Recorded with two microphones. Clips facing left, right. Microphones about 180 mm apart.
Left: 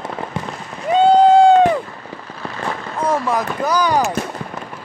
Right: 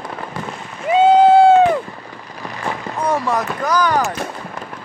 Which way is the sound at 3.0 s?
Centre (ahead or behind).